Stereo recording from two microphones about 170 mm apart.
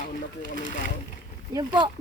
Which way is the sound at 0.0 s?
55° left (ahead or behind).